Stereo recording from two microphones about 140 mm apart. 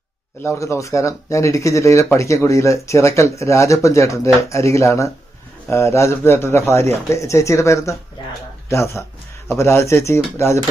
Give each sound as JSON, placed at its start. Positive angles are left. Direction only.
{"t": 0.4, "sound": "speech", "side_deg": 20}